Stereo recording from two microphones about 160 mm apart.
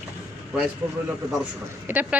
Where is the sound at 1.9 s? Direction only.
10° right (ahead or behind).